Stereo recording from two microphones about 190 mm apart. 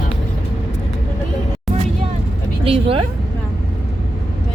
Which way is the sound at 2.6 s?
30° right (ahead or behind).